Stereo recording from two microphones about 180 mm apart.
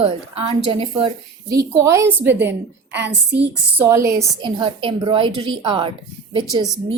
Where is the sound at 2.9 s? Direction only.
75° right (ahead or behind).